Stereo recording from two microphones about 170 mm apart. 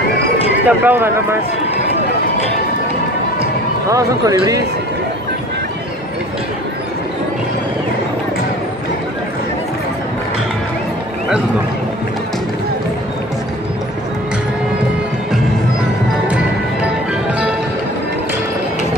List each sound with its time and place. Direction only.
0.7 s speech: 10° right (ahead or behind)
3.9 s speech: 20° right (ahead or behind)